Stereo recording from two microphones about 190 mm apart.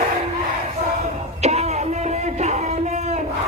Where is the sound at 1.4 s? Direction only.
35° right (ahead or behind).